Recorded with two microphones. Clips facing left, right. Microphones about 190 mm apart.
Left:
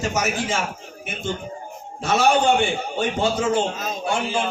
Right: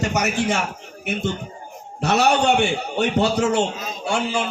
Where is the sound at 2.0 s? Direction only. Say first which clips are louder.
Even; 70° right (ahead or behind).